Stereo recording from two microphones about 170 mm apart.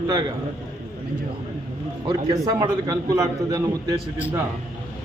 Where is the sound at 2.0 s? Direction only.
20° right (ahead or behind).